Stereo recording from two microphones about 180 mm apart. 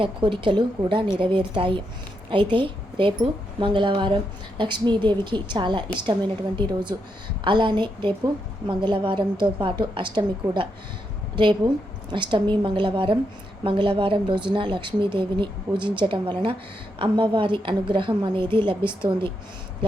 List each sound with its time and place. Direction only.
0.0 s speech: 30° right (ahead or behind)